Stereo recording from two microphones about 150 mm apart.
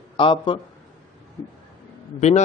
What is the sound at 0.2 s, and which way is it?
Speech, 35° left (ahead or behind).